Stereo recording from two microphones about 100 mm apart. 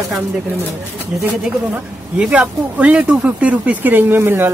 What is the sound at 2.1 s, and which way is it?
Speech, 15° right (ahead or behind).